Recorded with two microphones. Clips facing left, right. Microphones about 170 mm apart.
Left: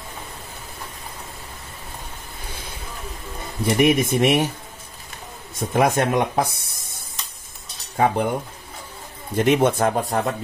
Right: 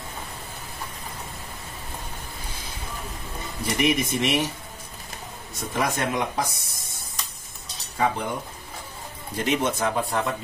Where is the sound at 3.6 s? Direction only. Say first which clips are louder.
Left 6 dB; 50° left (ahead or behind).